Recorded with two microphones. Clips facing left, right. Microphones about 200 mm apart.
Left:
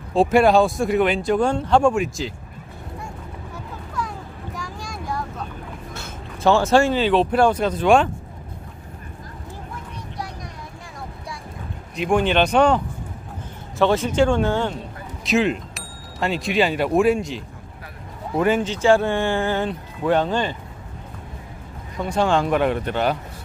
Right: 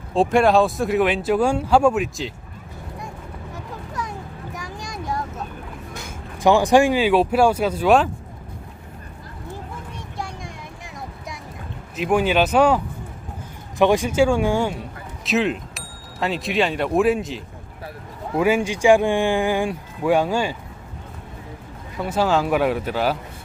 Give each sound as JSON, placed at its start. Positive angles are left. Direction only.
{"t": 0.1, "sound": "speech", "side_deg": 0}
{"t": 4.6, "sound": "a sound", "side_deg": -20}
{"t": 5.9, "sound": "speech", "side_deg": -15}
{"t": 11.9, "sound": "speech", "side_deg": -5}
{"t": 21.9, "sound": "speech", "side_deg": -5}